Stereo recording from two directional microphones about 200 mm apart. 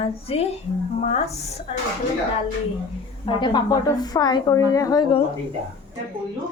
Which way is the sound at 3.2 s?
20° left (ahead or behind).